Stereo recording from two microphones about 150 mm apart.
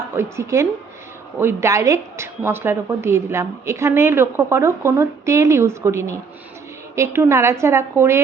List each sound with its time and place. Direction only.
0.2 s a woman's voice: 20° right (ahead or behind)